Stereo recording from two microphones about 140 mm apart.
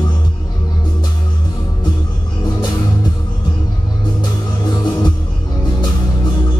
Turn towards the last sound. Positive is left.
turn(degrees=30)  # may be behind; listen again after turning